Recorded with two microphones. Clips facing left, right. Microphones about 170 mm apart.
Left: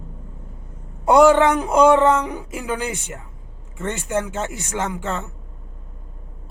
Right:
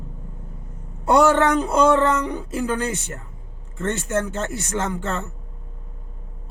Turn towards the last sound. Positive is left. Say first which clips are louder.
# even
turn(degrees=10)  # may be behind; listen again after turning